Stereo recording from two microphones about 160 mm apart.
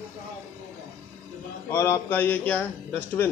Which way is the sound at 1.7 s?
15° left (ahead or behind).